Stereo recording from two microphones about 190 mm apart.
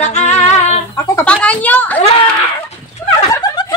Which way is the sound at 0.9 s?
15° left (ahead or behind).